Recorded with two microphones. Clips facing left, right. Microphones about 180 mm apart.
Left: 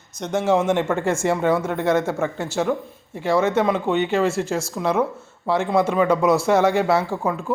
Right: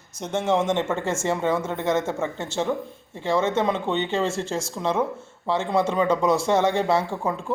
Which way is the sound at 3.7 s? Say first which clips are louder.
Left 4 dB; 10° left (ahead or behind).